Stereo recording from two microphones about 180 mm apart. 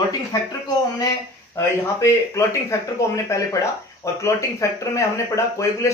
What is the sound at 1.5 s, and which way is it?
Speech, 15° left (ahead or behind).